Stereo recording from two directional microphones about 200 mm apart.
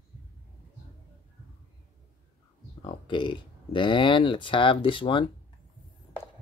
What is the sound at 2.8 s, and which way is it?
Speech, 25° left (ahead or behind).